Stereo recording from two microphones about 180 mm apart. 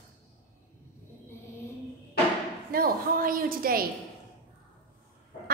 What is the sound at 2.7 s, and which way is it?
A woman's voice, 55° right (ahead or behind).